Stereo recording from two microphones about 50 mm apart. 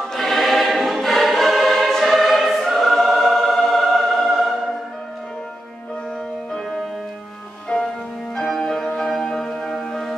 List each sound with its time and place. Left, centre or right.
0.1 s choir: centre
3.1 s music: centre
7.7 s music: centre
8.4 s music: centre